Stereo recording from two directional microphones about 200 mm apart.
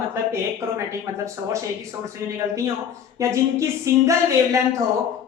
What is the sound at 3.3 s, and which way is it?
A woman's voice, 15° right (ahead or behind).